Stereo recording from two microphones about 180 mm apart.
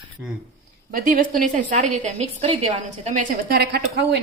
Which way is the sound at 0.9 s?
50° right (ahead or behind).